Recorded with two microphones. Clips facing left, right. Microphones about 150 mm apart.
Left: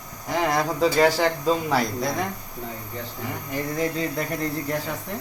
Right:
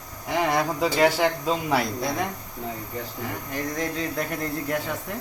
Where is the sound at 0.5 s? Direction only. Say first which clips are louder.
Left 2 dB; 5° right (ahead or behind).